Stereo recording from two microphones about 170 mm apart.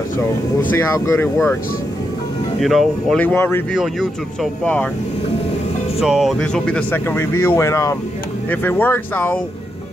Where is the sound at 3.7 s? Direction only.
Centre (ahead or behind).